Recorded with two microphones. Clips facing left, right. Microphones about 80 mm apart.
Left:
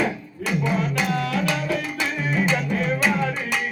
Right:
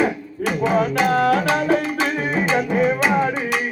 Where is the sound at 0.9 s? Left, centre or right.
Right.